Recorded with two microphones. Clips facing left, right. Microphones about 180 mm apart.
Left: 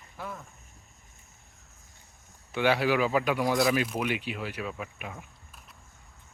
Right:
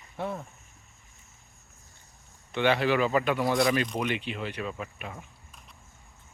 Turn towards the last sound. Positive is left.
turn(degrees=5)  # may be behind; listen again after turning